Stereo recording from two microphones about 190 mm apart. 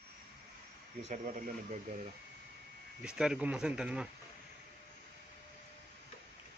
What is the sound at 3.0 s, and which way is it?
Speech, 5° right (ahead or behind).